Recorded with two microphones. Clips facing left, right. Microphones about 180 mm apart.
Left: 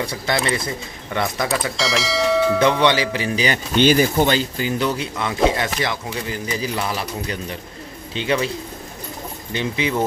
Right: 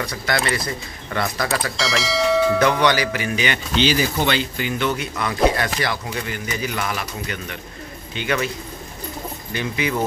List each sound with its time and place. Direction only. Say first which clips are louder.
0.0 s speech: left 1 dB; 25° left (ahead or behind)
1.5 s speech: left 1 dB; centre (ahead or behind)
2.8 s speech: left 1 dB; 25° left (ahead or behind)
3.7 s speech: left 5 dB; 50° left (ahead or behind); by 8.5 s 30° left (ahead or behind)
9.5 s speech: left 2 dB; 25° left (ahead or behind)